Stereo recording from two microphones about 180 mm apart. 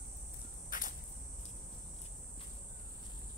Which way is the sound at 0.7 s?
50° left (ahead or behind).